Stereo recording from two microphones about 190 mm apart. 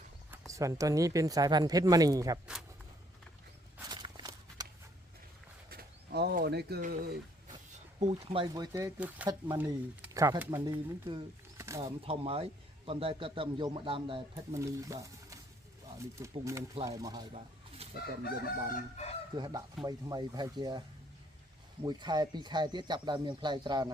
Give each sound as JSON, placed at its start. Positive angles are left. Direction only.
{"t": 0.5, "sound": "speech", "side_deg": -15}
{"t": 3.8, "sound": "walk", "side_deg": -20}
{"t": 5.7, "sound": "pigeon", "side_deg": -55}
{"t": 7.9, "sound": "a man's voice", "side_deg": -35}
{"t": 11.5, "sound": "a sound", "side_deg": -15}
{"t": 11.8, "sound": "a man's voice", "side_deg": -30}
{"t": 14.5, "sound": "a man's voice", "side_deg": -15}
{"t": 17.9, "sound": "chicken", "side_deg": 55}
{"t": 18.7, "sound": "chicken", "side_deg": 35}
{"t": 19.4, "sound": "a man's voice", "side_deg": -20}
{"t": 21.8, "sound": "a man's voice", "side_deg": -20}